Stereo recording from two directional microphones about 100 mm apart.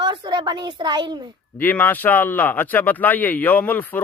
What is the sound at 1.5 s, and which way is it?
A man's voice, 15° left (ahead or behind).